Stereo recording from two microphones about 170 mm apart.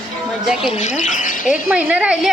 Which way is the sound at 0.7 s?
45° left (ahead or behind).